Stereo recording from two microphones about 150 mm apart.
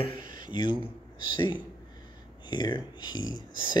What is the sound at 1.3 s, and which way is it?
Speech, 30° left (ahead or behind).